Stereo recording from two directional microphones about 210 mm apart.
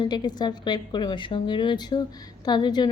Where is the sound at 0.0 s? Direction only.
20° left (ahead or behind).